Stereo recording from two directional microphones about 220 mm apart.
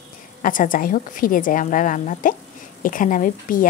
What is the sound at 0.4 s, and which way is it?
A woman's voice, 35° left (ahead or behind).